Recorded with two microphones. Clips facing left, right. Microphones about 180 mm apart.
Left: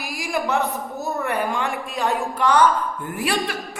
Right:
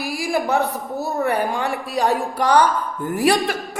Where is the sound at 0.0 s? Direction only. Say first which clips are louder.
Right 4 dB; 30° right (ahead or behind).